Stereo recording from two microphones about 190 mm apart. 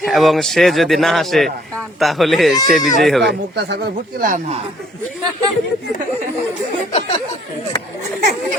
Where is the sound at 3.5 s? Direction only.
60° right (ahead or behind); by 4.5 s 45° right (ahead or behind).